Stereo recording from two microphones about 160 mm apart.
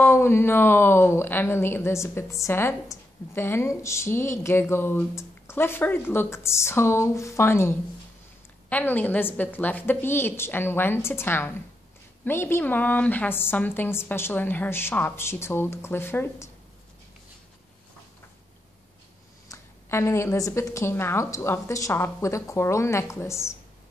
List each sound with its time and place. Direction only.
0.0 s a woman's voice: 15° left (ahead or behind)
19.5 s a woman's voice: 15° left (ahead or behind)